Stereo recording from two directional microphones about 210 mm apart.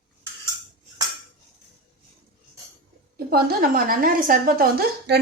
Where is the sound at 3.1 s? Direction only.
45° right (ahead or behind).